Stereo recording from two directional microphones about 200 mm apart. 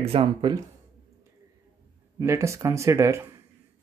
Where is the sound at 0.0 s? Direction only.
30° right (ahead or behind).